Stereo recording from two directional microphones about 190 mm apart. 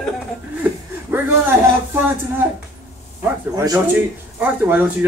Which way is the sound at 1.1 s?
10° right (ahead or behind).